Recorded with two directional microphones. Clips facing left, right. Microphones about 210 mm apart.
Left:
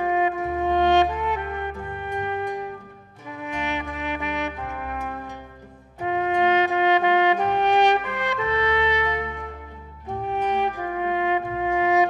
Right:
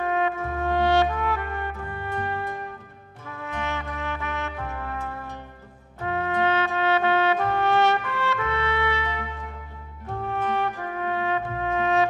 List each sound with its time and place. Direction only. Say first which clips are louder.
0.0 s trumpet: left 3 dB; 15° left (ahead or behind)
10.0 s music: left 2 dB; 15° left (ahead or behind)